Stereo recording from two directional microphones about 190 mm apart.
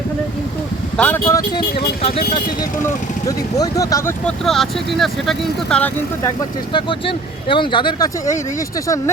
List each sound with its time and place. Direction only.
0.9 s speech: 10° left (ahead or behind)
2.0 s speech: 30° left (ahead or behind)
2.8 s speech: 20° left (ahead or behind)
4.3 s speech: centre (ahead or behind)
7.4 s speech: 25° left (ahead or behind)